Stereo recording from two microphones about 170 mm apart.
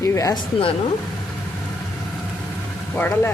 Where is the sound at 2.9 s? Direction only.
10° left (ahead or behind).